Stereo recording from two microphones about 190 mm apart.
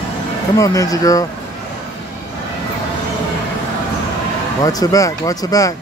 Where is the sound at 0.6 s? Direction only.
20° left (ahead or behind).